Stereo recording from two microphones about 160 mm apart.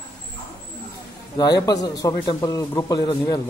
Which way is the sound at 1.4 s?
25° left (ahead or behind).